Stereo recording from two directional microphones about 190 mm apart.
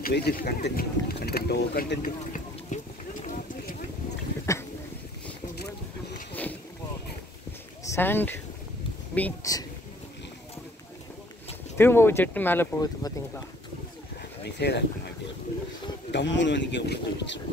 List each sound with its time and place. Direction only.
0.0 s speech: 55° left (ahead or behind)
2.0 s clip-clop: 40° left (ahead or behind)
7.8 s speech: 15° left (ahead or behind)
11.8 s speech: 10° left (ahead or behind)
14.4 s speech: 60° left (ahead or behind)
16.1 s speech: 70° left (ahead or behind)